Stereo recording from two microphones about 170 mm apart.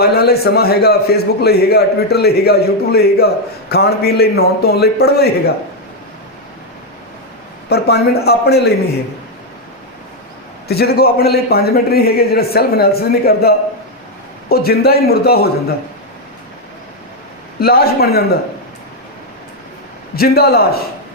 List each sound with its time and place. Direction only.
0.0 s a man's voice: 70° left (ahead or behind)
7.7 s a man's voice: 70° left (ahead or behind)
10.7 s a man's voice: 65° left (ahead or behind)
17.6 s a man's voice: 65° left (ahead or behind)
20.1 s a man's voice: 65° left (ahead or behind)